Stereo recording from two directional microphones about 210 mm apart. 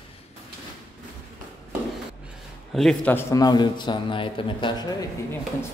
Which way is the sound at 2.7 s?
5° left (ahead or behind).